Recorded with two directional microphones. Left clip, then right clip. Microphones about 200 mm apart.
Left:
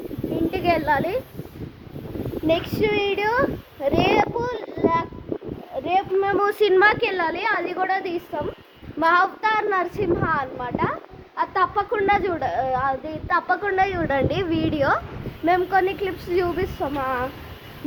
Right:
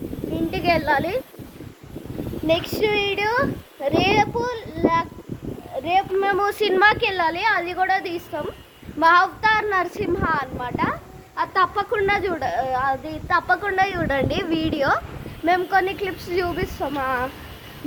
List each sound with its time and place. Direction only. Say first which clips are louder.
0.5 s a sound: right 1 dB; centre (ahead or behind)
2.5 s a child's voice: right 1 dB; centre (ahead or behind); by 6.3 s 20° right (ahead or behind)
6.4 s a woman's voice: left 1 dB; centre (ahead or behind); by 8.2 s 20° right (ahead or behind)
9.0 s a woman's voice: right 2 dB; 10° right (ahead or behind)